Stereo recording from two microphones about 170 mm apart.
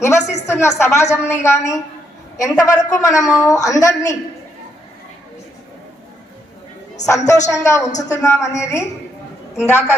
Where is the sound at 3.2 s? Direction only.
5° right (ahead or behind).